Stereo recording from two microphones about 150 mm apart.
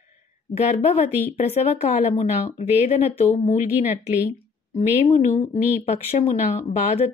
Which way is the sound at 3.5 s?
55° left (ahead or behind).